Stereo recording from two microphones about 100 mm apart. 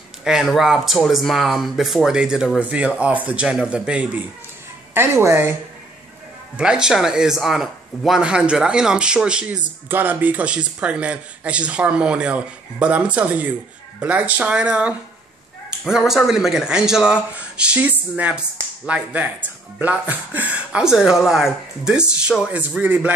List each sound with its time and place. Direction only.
0.2 s speech: 5° right (ahead or behind)
4.9 s a woman's voice: 25° right (ahead or behind)
6.5 s speech: 10° right (ahead or behind)